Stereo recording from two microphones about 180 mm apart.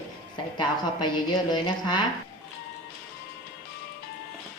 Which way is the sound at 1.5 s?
25° left (ahead or behind).